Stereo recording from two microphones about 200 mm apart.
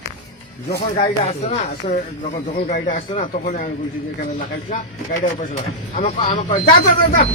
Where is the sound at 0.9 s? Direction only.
35° left (ahead or behind).